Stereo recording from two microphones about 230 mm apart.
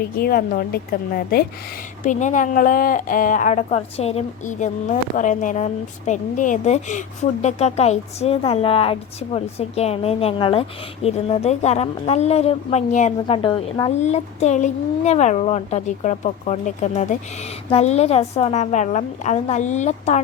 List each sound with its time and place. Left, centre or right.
0.2 s a woman's voice: left